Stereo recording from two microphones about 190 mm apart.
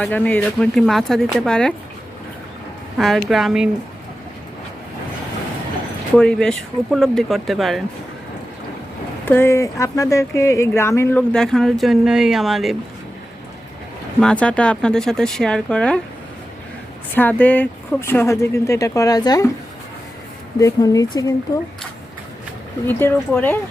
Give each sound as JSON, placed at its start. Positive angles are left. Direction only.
{"t": 0.0, "sound": "speech", "side_deg": 10}
{"t": 3.0, "sound": "speech", "side_deg": 0}
{"t": 6.1, "sound": "speech", "side_deg": 5}
{"t": 9.2, "sound": "speech", "side_deg": 10}
{"t": 14.2, "sound": "speech", "side_deg": 5}
{"t": 17.2, "sound": "speech", "side_deg": 10}
{"t": 20.6, "sound": "speech", "side_deg": 20}
{"t": 22.9, "sound": "speech", "side_deg": 10}